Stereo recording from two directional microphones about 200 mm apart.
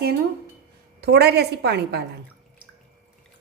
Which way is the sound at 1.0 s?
55° right (ahead or behind).